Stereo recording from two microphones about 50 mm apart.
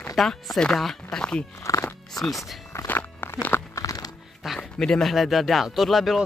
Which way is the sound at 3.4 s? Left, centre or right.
Left.